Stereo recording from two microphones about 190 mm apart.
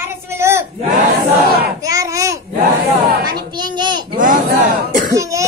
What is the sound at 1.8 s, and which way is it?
Babbling, 15° right (ahead or behind).